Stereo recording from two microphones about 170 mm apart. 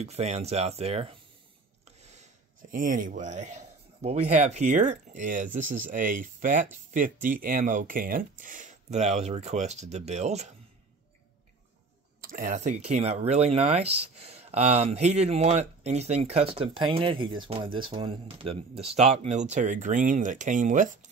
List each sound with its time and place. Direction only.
0.0 s speech: 40° right (ahead or behind)
2.0 s a sound: 40° right (ahead or behind)
2.7 s speech: 50° right (ahead or behind)
12.2 s speech: 55° right (ahead or behind)